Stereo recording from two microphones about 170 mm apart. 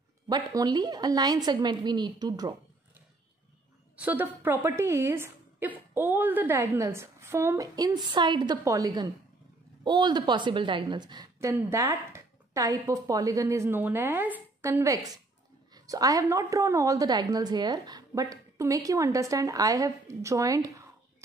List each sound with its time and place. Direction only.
0.3 s a woman's voice: 25° right (ahead or behind)
3.9 s a woman's voice: 10° right (ahead or behind)